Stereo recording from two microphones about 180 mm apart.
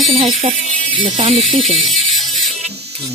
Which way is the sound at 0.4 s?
30° right (ahead or behind).